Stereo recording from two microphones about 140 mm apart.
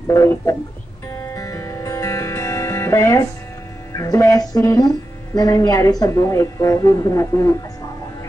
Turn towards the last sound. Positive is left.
turn(degrees=25)  # may be behind; listen again after turning